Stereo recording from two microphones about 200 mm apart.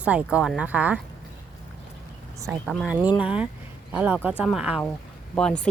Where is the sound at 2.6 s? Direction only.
Centre (ahead or behind).